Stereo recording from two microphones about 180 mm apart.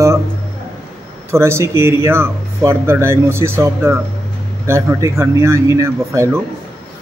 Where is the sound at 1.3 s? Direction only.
15° right (ahead or behind).